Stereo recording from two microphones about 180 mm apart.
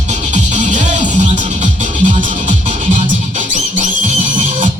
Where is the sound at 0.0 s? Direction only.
40° right (ahead or behind).